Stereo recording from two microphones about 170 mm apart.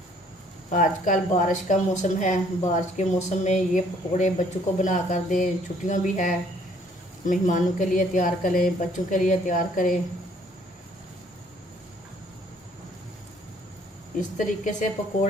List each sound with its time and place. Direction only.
0.7 s speech: 50° left (ahead or behind)
14.3 s speech: 45° left (ahead or behind)